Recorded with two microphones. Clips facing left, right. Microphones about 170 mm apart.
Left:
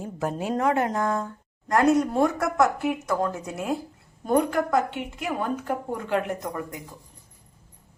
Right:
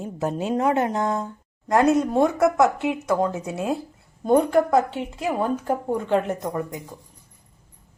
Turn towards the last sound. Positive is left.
turn(degrees=-25)  # may be behind; listen again after turning